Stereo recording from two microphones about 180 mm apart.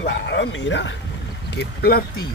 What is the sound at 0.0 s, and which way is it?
Speech, 80° left.